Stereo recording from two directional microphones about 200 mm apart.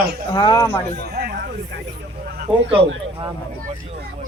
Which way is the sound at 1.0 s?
50° right (ahead or behind).